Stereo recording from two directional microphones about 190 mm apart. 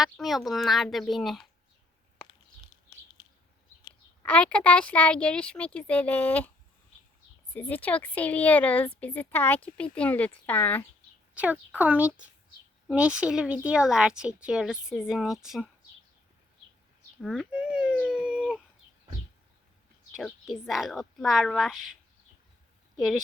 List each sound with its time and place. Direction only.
0.0 s a woman's voice: centre (ahead or behind)
2.9 s a sound: 20° left (ahead or behind)
4.2 s speech: 5° left (ahead or behind)
7.5 s speech: 10° left (ahead or behind)
11.3 s a woman's voice: 5° right (ahead or behind)
17.2 s speech: centre (ahead or behind)
20.1 s a woman's voice: centre (ahead or behind)
23.0 s a woman's voice: centre (ahead or behind)